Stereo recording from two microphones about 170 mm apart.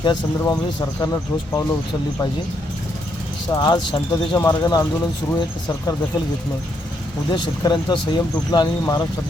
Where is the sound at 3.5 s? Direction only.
20° left (ahead or behind).